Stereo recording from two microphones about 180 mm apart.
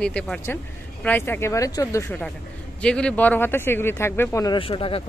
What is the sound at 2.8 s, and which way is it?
Speech, 5° left (ahead or behind).